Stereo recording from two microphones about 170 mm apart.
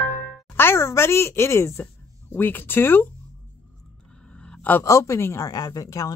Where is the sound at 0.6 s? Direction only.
15° left (ahead or behind).